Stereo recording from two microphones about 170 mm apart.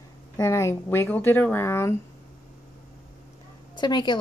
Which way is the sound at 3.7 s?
25° left (ahead or behind).